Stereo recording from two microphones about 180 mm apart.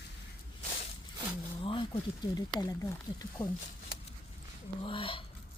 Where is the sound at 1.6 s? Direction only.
30° left (ahead or behind).